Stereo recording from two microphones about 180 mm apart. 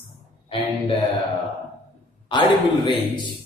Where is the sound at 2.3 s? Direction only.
25° left (ahead or behind).